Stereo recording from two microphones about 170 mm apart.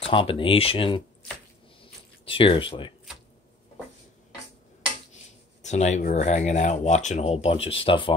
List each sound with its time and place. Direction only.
0.0 s speech: 30° left (ahead or behind)
1.8 s a sound: 30° left (ahead or behind)
5.6 s speech: 45° left (ahead or behind)